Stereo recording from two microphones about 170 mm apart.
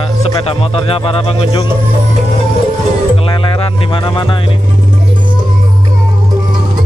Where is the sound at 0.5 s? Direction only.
35° left (ahead or behind).